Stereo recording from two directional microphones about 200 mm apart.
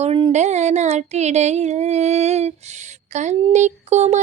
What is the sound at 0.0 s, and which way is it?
Speech, 30° right (ahead or behind).